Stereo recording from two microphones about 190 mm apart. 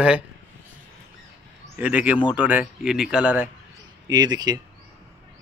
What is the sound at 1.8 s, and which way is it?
Speech, 10° right (ahead or behind).